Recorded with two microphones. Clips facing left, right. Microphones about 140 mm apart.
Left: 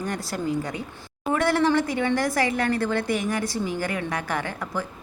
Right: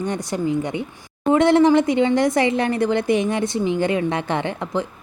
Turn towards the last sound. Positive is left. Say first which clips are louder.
# right 6 dB
turn(degrees=-20)  # may be behind; listen again after turning